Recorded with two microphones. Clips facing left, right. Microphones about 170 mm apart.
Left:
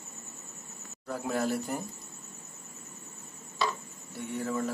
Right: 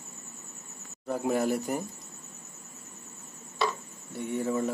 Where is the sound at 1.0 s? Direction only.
20° right (ahead or behind).